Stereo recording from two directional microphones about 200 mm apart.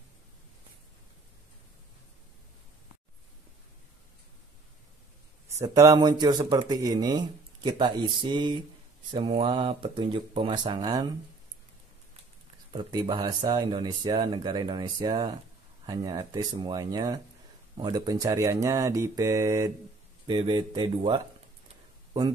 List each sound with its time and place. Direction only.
5.6 s speech: 15° right (ahead or behind)
12.7 s speech: 25° right (ahead or behind)